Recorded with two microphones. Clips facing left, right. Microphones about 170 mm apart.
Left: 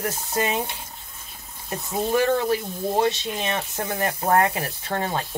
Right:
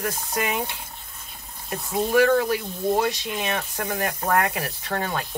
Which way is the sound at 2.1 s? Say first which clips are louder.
Right 2 dB; 25° left (ahead or behind).